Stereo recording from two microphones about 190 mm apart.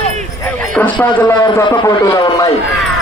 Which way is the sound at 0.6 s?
10° left (ahead or behind).